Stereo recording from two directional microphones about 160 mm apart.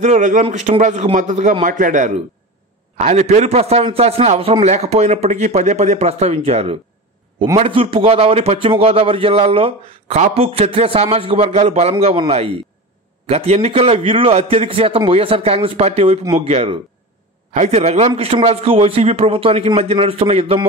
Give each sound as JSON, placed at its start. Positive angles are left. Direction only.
{"t": 0.0, "sound": "a man's voice", "side_deg": -50}